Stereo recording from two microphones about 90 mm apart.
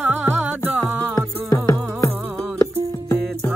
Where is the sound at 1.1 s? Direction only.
40° left (ahead or behind).